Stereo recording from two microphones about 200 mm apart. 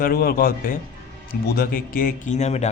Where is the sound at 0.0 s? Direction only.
50° left (ahead or behind).